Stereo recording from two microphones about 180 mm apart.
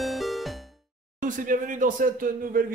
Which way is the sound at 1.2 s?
45° right (ahead or behind).